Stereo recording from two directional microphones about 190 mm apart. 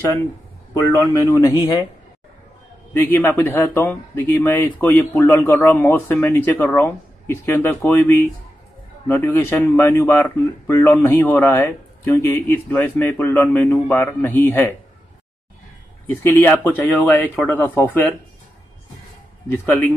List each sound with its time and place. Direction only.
1.1 s a man's voice: 15° left (ahead or behind)
2.9 s speech: 10° left (ahead or behind)
16.1 s speech: 10° left (ahead or behind)
19.5 s speech: 10° left (ahead or behind)